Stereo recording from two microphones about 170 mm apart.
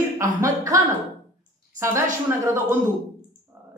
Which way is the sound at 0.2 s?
20° right (ahead or behind).